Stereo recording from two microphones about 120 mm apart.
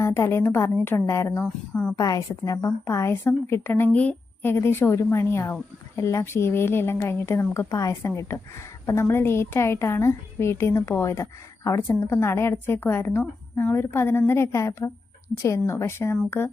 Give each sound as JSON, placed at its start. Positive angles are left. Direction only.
{"t": 0.0, "sound": "a woman's voice", "side_deg": 25}
{"t": 1.5, "sound": "a woman's voice", "side_deg": 5}
{"t": 2.0, "sound": "a woman's voice", "side_deg": 30}